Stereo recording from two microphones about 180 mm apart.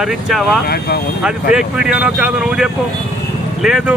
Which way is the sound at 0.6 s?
60° left (ahead or behind).